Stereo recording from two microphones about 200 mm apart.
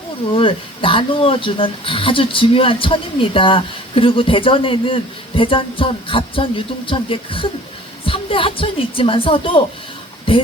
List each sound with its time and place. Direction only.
0.3 s speech: 25° left (ahead or behind)